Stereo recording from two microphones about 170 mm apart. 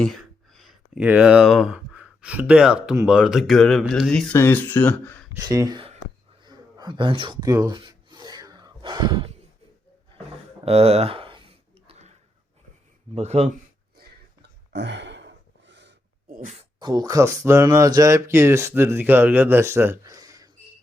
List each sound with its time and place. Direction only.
0.0 s speech: centre (ahead or behind)
5.4 s speech: 20° right (ahead or behind)
6.4 s gasp: 25° right (ahead or behind)
10.7 s a sound: 35° right (ahead or behind)
13.1 s speech: 40° right (ahead or behind)
14.7 s gasp: 90° right
16.3 s a sound: 55° right (ahead or behind)
16.8 s speech: 25° right (ahead or behind)